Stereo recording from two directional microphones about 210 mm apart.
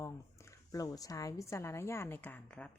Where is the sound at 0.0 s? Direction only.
15° left (ahead or behind).